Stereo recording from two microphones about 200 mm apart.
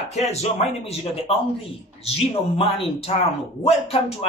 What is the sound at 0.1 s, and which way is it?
Speech, 30° left (ahead or behind).